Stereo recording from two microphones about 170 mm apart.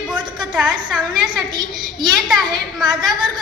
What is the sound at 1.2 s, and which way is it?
Speech, 25° right (ahead or behind).